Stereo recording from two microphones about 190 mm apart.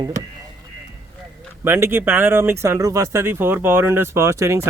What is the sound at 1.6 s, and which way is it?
Speech, 10° right (ahead or behind).